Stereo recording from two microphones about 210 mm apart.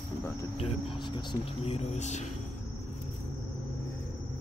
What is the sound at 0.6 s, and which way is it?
Speech, 25° left (ahead or behind).